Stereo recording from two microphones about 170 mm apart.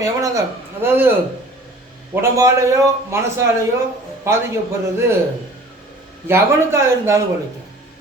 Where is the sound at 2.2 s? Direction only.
15° right (ahead or behind).